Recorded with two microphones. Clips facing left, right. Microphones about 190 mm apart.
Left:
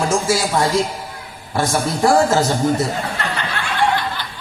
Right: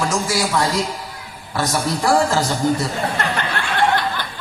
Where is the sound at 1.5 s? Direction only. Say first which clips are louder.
Left 2 dB; 25° left (ahead or behind).